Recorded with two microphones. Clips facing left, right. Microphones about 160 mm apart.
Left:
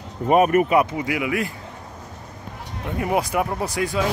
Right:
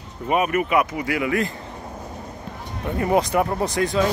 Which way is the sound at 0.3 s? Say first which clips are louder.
Left 5 dB; 45° left (ahead or behind).